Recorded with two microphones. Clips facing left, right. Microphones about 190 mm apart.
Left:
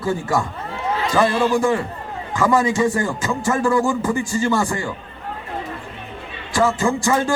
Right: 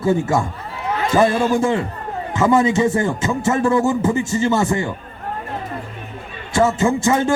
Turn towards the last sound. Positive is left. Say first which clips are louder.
# right 2 dB
turn(degrees=-20)  # may be behind; listen again after turning